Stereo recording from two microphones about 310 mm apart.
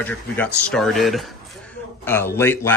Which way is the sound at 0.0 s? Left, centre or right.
Centre.